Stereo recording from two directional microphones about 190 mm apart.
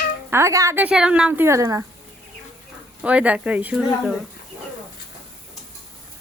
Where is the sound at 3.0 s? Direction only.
5° right (ahead or behind).